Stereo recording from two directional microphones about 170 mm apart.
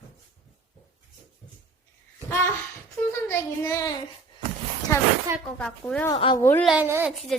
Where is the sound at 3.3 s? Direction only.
15° left (ahead or behind).